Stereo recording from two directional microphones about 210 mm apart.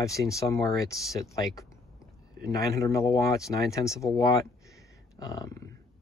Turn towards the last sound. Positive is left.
turn(degrees=15)  # may be behind; listen again after turning